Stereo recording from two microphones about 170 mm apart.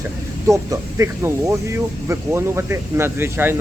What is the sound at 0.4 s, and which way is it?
Speech, 20° right (ahead or behind).